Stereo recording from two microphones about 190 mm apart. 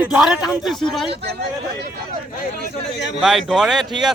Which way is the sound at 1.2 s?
60° right (ahead or behind).